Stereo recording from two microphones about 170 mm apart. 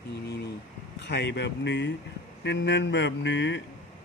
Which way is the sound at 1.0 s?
90° left.